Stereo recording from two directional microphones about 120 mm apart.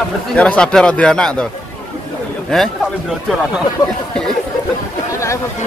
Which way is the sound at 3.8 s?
35° left (ahead or behind).